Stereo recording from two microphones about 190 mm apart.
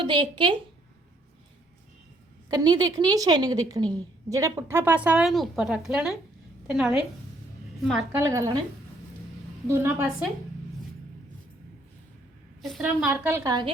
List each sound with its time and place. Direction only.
0.0 s a woman's voice: 25° right (ahead or behind)
2.5 s a woman's voice: 20° right (ahead or behind); by 7.0 s 5° right (ahead or behind)
8.1 s a woman's voice: 15° right (ahead or behind)
9.6 s a woman's voice: 10° right (ahead or behind)
12.6 s a woman's voice: centre (ahead or behind)
13.3 s a woman's voice: 20° right (ahead or behind)